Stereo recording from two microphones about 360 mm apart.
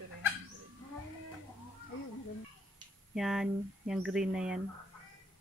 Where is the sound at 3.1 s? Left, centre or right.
Centre.